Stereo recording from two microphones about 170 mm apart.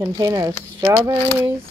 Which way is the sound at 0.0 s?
20° right (ahead or behind).